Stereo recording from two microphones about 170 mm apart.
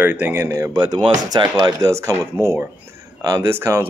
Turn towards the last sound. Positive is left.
turn(degrees=-15)  # may be behind; listen again after turning